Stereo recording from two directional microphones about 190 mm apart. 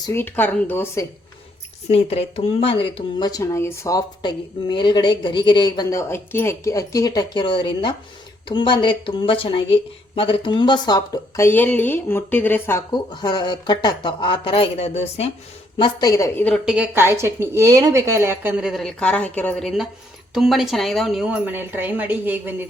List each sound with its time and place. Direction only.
0.0 s speech: 15° left (ahead or behind)
1.9 s speech: 30° left (ahead or behind)
15.8 s speech: 20° left (ahead or behind)
16.6 s a woman's voice: 5° right (ahead or behind)